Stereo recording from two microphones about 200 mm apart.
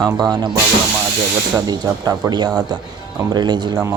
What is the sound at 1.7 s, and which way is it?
Speech, 20° right (ahead or behind).